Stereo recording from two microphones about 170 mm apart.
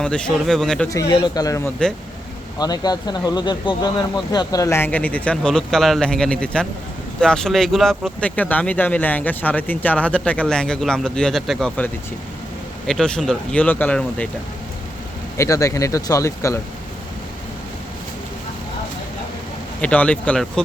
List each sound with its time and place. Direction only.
0.0 s speech: 5° left (ahead or behind)
0.9 s speech: 20° left (ahead or behind); by 11.9 s 5° left (ahead or behind)
12.9 s speech: 5° left (ahead or behind)
15.4 s speech: 20° left (ahead or behind)
19.8 s speech: 10° left (ahead or behind)